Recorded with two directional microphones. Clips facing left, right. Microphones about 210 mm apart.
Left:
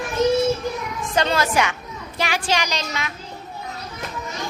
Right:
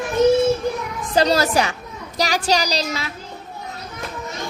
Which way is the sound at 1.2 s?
40° right (ahead or behind).